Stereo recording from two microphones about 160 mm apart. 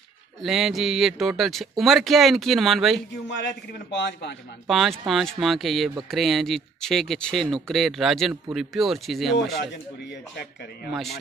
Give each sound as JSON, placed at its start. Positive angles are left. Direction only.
{"t": 0.4, "sound": "speech", "side_deg": 0}
{"t": 3.3, "sound": "a man's voice", "side_deg": 90}
{"t": 4.6, "sound": "speech", "side_deg": 0}